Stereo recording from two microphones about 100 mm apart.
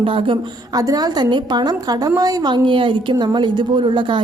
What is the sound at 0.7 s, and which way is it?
A woman's voice, 40° right (ahead or behind).